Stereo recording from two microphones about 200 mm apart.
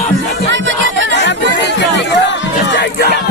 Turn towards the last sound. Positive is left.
turn(degrees=50)  # may be behind; listen again after turning